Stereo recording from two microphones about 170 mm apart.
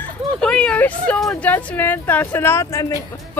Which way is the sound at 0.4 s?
5° left (ahead or behind).